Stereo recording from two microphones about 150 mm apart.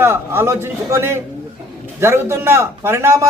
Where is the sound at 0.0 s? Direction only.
15° right (ahead or behind).